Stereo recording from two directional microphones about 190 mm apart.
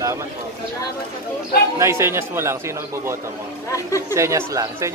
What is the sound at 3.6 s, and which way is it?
Speech, 15° left (ahead or behind).